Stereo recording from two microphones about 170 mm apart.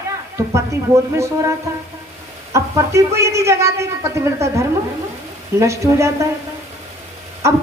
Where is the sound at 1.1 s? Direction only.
15° right (ahead or behind).